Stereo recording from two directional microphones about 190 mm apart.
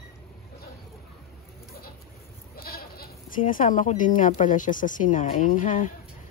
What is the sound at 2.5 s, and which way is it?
Speech, 55° left (ahead or behind).